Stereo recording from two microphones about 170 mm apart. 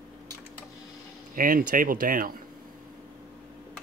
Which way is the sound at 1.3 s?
55° right (ahead or behind).